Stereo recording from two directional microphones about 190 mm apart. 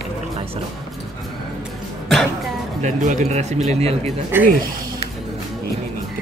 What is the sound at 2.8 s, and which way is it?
Speech, 40° right (ahead or behind).